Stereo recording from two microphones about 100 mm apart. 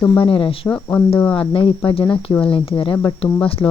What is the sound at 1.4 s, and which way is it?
Speech, 60° left (ahead or behind).